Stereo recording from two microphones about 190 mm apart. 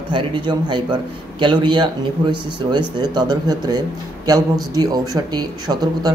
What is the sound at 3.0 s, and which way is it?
Speech, 20° right (ahead or behind).